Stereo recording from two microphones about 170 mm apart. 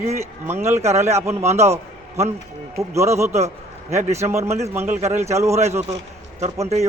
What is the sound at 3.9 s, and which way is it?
Speech, 40° right (ahead or behind).